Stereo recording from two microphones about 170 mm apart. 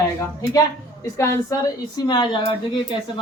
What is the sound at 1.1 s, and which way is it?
Speech, 20° left (ahead or behind).